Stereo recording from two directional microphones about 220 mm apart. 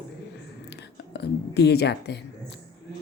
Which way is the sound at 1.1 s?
50° left (ahead or behind).